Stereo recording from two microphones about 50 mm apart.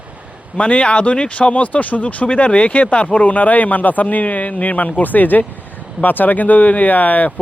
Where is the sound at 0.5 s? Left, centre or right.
Left.